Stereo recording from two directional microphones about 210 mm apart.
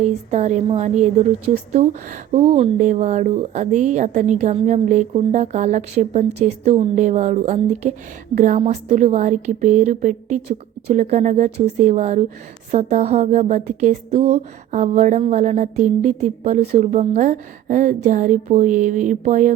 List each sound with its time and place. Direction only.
0.0 s speech: 30° right (ahead or behind)